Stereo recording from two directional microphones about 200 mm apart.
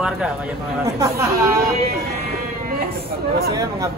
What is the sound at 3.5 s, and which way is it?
Speech, 15° right (ahead or behind).